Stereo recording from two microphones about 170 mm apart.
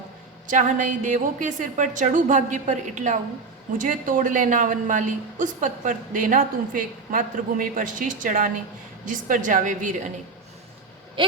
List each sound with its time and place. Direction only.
0.4 s a woman's voice: 50° right (ahead or behind)